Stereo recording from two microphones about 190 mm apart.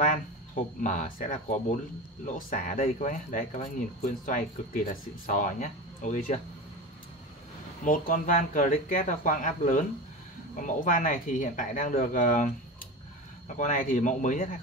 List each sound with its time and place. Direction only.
0.7 s speech: 45° left (ahead or behind)
7.8 s speech: 45° left (ahead or behind)
13.6 s speech: 45° left (ahead or behind)